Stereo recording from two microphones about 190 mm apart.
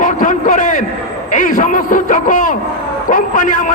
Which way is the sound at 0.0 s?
45° left (ahead or behind).